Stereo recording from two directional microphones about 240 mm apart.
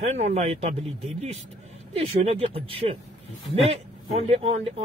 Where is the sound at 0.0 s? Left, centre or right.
Right.